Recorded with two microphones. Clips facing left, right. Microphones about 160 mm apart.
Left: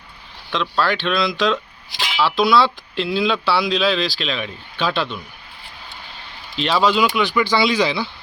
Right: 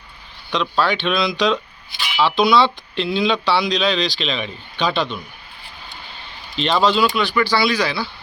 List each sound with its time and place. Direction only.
0.5 s speech: centre (ahead or behind)
6.6 s speech: 5° left (ahead or behind); by 8.1 s 20° left (ahead or behind)